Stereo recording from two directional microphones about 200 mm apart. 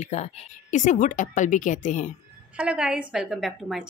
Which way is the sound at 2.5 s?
5° right (ahead or behind).